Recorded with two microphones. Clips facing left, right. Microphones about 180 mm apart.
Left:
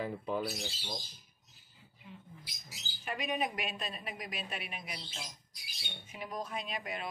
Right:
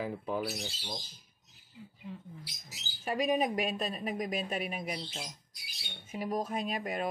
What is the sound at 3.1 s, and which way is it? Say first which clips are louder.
A woman's voice: right 6 dB; 40° right (ahead or behind).